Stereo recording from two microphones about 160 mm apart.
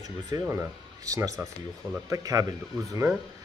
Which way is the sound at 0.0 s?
20° right (ahead or behind).